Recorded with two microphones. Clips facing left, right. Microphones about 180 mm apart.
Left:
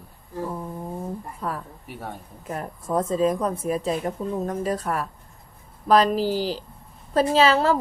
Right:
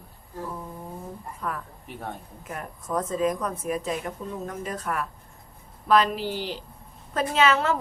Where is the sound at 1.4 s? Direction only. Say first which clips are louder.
Left 2 dB; 30° left (ahead or behind).